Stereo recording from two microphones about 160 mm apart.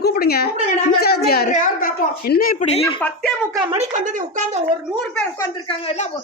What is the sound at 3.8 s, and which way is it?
Speech, 50° right (ahead or behind).